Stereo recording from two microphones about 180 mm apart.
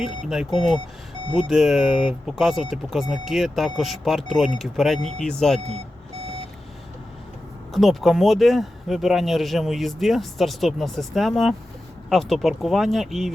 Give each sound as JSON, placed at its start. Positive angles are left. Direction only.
{"t": 0.3, "sound": "speech", "side_deg": 0}
{"t": 5.5, "sound": "speech", "side_deg": -35}
{"t": 7.7, "sound": "speech", "side_deg": 0}